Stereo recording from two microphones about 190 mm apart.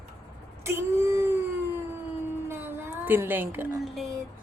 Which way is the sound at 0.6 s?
15° right (ahead or behind).